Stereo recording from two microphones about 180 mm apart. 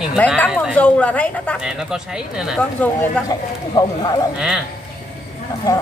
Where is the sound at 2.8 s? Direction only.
15° left (ahead or behind).